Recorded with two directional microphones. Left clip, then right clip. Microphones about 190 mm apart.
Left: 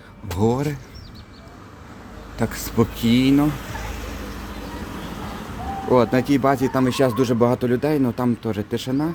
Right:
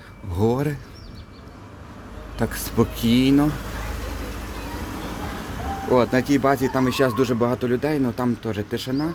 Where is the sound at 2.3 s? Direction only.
5° left (ahead or behind).